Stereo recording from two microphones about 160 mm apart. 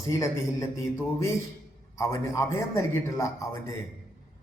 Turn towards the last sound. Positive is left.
turn(degrees=20)  # may be behind; listen again after turning